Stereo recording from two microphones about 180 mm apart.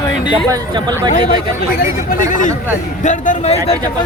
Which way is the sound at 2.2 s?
45° left (ahead or behind).